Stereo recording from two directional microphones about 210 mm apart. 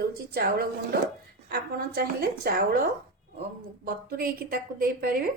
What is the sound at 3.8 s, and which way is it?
A woman's voice, 45° right (ahead or behind).